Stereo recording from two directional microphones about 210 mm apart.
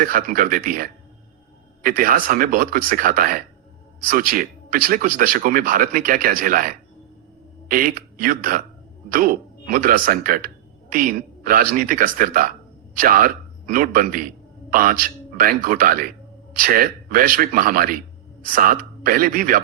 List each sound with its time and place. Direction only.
0.0 s speech: 40° right (ahead or behind)